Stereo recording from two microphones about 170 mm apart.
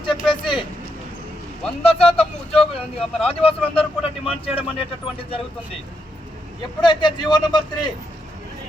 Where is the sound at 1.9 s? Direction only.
35° left (ahead or behind).